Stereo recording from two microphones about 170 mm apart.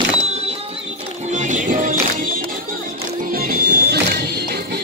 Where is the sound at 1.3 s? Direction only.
45° right (ahead or behind).